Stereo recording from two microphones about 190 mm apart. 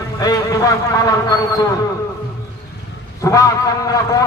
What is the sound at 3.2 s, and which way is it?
Speech, 20° left (ahead or behind).